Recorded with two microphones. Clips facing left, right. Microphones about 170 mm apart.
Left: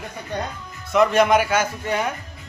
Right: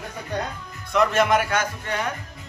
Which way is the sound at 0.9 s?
Centre (ahead or behind).